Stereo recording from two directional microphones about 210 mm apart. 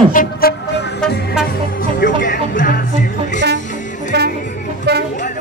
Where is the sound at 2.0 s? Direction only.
40° left (ahead or behind).